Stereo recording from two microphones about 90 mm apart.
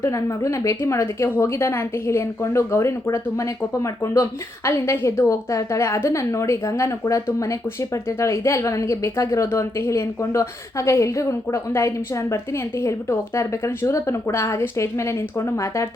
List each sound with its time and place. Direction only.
0.0 s a woman's voice: 35° left (ahead or behind)